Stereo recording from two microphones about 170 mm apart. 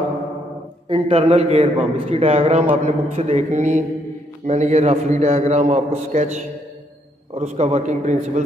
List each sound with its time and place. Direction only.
0.8 s a man's voice: 35° right (ahead or behind)
7.3 s a man's voice: 45° right (ahead or behind)